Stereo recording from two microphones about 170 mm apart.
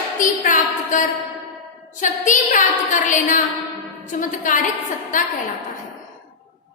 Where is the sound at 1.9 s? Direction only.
50° left (ahead or behind).